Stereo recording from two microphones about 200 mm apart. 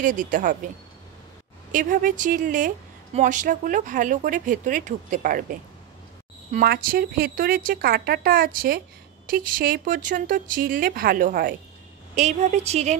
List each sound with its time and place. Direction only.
0.0 s speech: 40° right (ahead or behind)
1.7 s speech: 45° right (ahead or behind)